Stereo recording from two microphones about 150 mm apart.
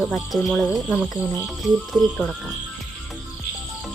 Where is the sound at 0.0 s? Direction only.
Centre (ahead or behind).